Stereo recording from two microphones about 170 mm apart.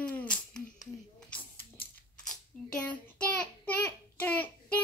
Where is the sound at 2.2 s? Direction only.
5° left (ahead or behind).